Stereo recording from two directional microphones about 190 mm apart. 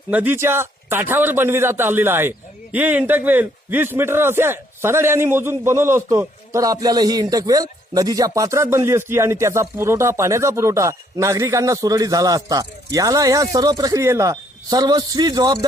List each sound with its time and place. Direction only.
0.1 s a man's voice: 10° right (ahead or behind)